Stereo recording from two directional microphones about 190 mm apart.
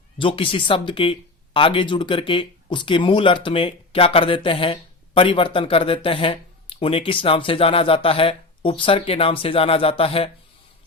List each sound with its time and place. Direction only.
0.2 s speech: 25° left (ahead or behind)